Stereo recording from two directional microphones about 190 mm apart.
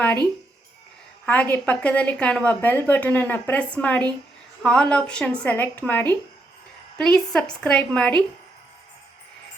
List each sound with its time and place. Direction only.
1.2 s a woman's voice: 10° left (ahead or behind)